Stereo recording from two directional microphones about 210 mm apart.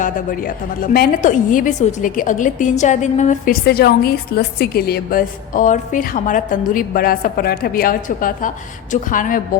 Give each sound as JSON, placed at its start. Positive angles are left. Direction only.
{"t": 0.0, "sound": "a woman's voice", "side_deg": 40}